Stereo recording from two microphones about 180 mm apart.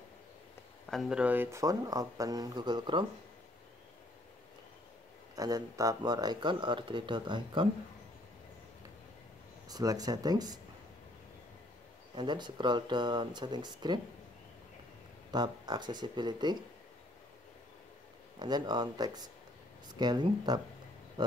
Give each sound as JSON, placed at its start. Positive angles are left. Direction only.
{"t": 0.8, "sound": "speech", "side_deg": 0}
{"t": 5.3, "sound": "speech", "side_deg": -20}
{"t": 9.7, "sound": "speech", "side_deg": -20}
{"t": 12.2, "sound": "speech", "side_deg": -25}
{"t": 15.3, "sound": "speech", "side_deg": -25}
{"t": 18.4, "sound": "speech", "side_deg": -25}